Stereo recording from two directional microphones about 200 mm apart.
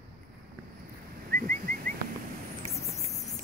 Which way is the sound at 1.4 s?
45° right (ahead or behind).